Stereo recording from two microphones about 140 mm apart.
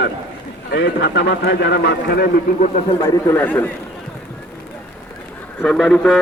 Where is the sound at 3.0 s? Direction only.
20° left (ahead or behind).